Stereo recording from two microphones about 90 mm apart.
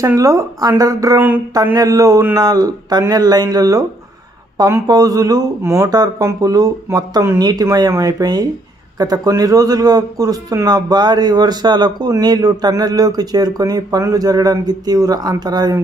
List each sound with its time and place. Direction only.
0.0 s speech: 40° right (ahead or behind)
1.1 s speech: 20° right (ahead or behind)
1.5 s speech: 45° right (ahead or behind)
4.8 s speech: 45° right (ahead or behind)